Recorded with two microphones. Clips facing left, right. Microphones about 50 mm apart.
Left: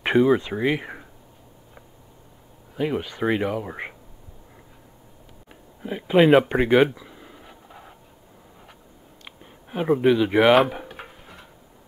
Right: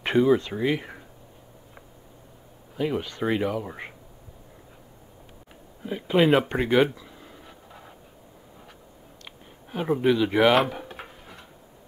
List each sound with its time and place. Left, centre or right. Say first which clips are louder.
0.0 s speech: left 2 dB; centre
2.7 s speech: left 2 dB; centre
5.5 s speech: left 1 dB; centre
6.5 s a sound: left 3 dB; centre
9.2 s speech: left 2 dB; centre
10.9 s a sound: left 1 dB; centre